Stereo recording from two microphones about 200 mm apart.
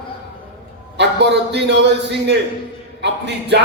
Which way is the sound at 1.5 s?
60° right (ahead or behind).